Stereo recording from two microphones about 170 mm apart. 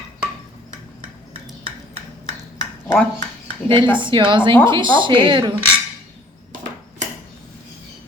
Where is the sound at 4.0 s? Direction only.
30° right (ahead or behind).